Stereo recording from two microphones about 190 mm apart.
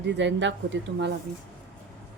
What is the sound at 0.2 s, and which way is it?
Speech, 70° right (ahead or behind).